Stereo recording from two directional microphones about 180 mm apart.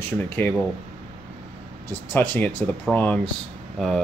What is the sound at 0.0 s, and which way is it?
Speech, 10° left (ahead or behind).